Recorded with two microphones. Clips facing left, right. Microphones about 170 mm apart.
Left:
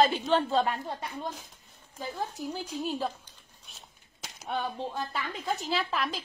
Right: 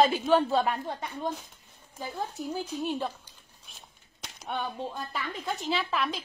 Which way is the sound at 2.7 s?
Centre (ahead or behind).